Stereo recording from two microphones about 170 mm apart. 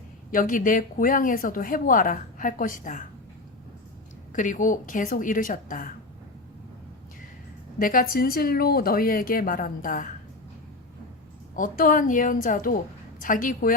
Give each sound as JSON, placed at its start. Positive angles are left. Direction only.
{"t": 0.3, "sound": "speech", "side_deg": 50}
{"t": 4.3, "sound": "speech", "side_deg": 50}
{"t": 7.8, "sound": "speech", "side_deg": 55}
{"t": 11.5, "sound": "speech", "side_deg": 50}